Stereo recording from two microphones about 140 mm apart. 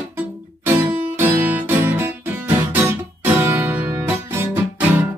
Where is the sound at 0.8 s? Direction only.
15° right (ahead or behind).